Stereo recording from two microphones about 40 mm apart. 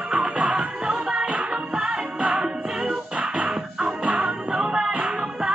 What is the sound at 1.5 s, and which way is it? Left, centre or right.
Music, right.